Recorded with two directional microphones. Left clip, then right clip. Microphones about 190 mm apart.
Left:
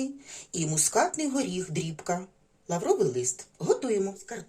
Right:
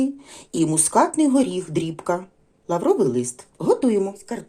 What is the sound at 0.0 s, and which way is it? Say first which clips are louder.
Speech: right 10 dB; 35° right (ahead or behind).